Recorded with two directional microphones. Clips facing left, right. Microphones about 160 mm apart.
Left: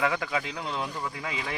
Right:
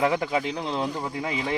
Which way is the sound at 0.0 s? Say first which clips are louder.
Right 5 dB; 25° right (ahead or behind).